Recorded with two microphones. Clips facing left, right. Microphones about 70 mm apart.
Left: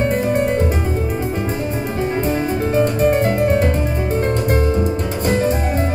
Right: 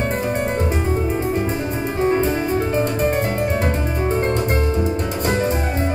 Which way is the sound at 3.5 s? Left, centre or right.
Right.